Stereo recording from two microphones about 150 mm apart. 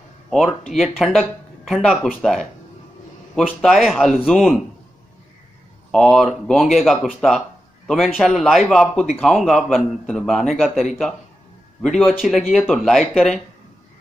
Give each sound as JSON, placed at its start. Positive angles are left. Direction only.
{"t": 0.3, "sound": "speech", "side_deg": 0}
{"t": 5.9, "sound": "speech", "side_deg": 0}
{"t": 12.1, "sound": "speech", "side_deg": 0}